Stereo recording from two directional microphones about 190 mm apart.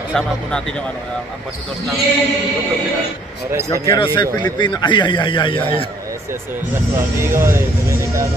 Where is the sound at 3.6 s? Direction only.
15° left (ahead or behind).